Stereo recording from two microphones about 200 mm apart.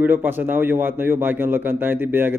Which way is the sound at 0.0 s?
10° right (ahead or behind).